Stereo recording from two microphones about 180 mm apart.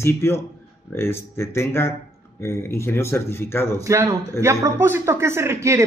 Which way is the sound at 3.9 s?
15° right (ahead or behind).